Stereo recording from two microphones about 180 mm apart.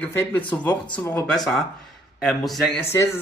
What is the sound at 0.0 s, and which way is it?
Speech, 10° left (ahead or behind).